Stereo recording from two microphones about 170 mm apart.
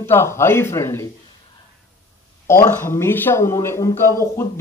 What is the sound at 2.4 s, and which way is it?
Speech, 15° left (ahead or behind).